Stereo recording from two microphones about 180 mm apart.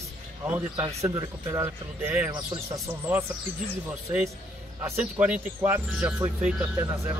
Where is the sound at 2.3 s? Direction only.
25° right (ahead or behind).